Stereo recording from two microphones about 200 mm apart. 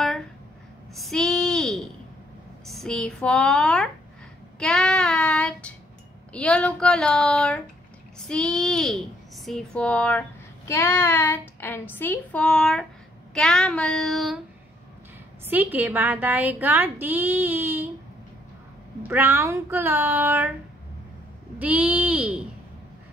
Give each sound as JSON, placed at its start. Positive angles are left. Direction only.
{"t": 0.9, "sound": "a sound", "side_deg": 0}
{"t": 2.6, "sound": "speech", "side_deg": 0}
{"t": 4.6, "sound": "child singing", "side_deg": 5}
{"t": 6.3, "sound": "speech", "side_deg": 5}
{"t": 15.4, "sound": "a woman's voice", "side_deg": -10}
{"t": 19.0, "sound": "a woman's voice", "side_deg": -10}
{"t": 21.5, "sound": "a woman's voice", "side_deg": -5}